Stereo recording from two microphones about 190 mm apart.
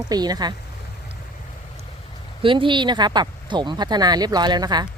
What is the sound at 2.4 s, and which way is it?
Speech, 25° right (ahead or behind).